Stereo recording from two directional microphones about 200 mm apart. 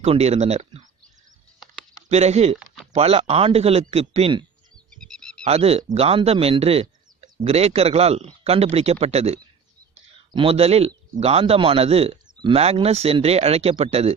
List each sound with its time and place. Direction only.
0.0 s speech: 30° right (ahead or behind)
2.0 s speech: 35° right (ahead or behind)
2.6 s a sound: centre (ahead or behind)
2.9 s speech: 30° right (ahead or behind)
4.9 s a sound: 5° left (ahead or behind)
5.5 s a man's voice: 30° right (ahead or behind)